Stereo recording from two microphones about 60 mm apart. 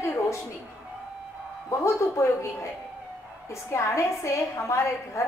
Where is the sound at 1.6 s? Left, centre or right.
Left.